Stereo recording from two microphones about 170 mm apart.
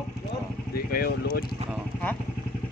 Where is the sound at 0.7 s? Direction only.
65° left (ahead or behind).